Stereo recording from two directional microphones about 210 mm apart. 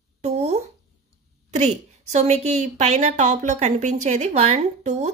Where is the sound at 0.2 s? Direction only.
30° right (ahead or behind).